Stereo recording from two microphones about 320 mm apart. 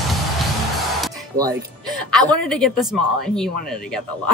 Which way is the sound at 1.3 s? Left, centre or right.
Centre.